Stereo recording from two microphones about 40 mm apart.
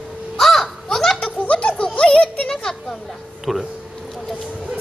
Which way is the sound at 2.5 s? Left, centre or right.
Centre.